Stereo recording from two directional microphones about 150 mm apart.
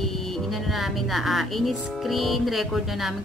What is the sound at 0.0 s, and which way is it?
Speech, centre (ahead or behind).